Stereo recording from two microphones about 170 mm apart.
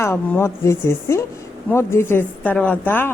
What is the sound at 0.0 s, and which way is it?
A woman's voice, 15° left (ahead or behind).